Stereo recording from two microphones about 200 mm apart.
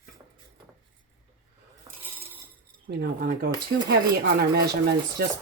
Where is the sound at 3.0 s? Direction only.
45° right (ahead or behind).